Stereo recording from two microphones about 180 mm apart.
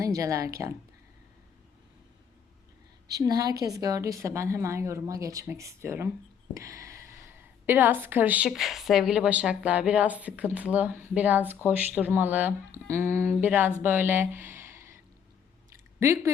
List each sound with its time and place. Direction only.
0.0 s a woman's voice: 20° right (ahead or behind)
3.1 s a woman's voice: 20° right (ahead or behind)
16.0 s a woman's voice: 15° right (ahead or behind)